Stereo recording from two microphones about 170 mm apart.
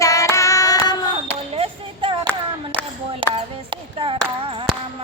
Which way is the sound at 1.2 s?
35° right (ahead or behind).